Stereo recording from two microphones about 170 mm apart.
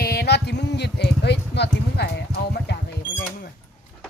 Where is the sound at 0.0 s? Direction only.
65° left (ahead or behind).